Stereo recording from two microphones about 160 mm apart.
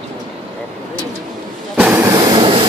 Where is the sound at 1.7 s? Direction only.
10° right (ahead or behind); by 2.6 s 30° right (ahead or behind).